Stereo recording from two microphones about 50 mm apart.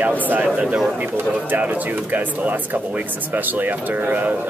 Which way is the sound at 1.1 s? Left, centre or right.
Right.